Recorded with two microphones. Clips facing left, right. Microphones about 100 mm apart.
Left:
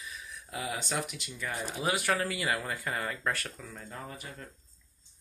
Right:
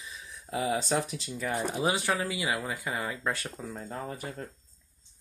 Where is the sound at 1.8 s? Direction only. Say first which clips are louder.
Left 1 dB; 25° right (ahead or behind).